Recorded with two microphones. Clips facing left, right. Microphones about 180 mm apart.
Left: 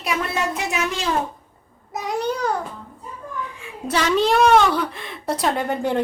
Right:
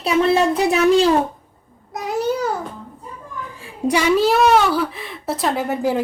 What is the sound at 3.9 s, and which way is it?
A woman's voice, 10° right (ahead or behind).